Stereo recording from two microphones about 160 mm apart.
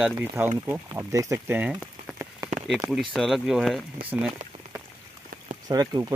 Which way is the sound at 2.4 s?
25° right (ahead or behind).